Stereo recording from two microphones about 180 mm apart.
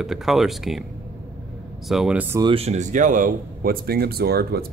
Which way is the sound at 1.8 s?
Centre (ahead or behind).